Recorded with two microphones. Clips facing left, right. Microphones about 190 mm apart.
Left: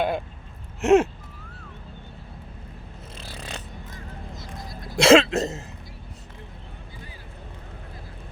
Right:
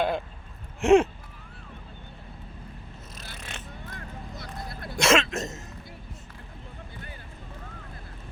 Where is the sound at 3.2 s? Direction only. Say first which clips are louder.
Left 5 dB; 30° left (ahead or behind).